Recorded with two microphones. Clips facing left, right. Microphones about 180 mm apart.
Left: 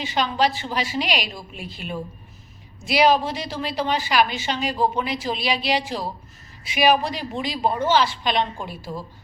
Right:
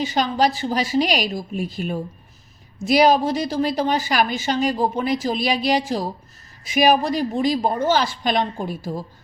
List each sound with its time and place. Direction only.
0.0 s a woman's voice: 40° right (ahead or behind)